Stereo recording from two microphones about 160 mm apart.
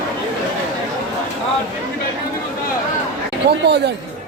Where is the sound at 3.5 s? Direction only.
90° right.